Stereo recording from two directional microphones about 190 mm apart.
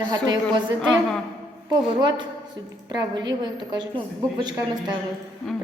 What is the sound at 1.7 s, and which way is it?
A woman's voice, 25° right (ahead or behind).